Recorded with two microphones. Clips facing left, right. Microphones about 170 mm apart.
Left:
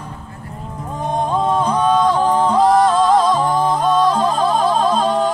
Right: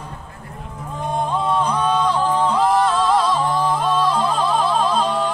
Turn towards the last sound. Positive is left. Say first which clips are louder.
# left 3 dB
turn(degrees=40)  # may be behind; listen again after turning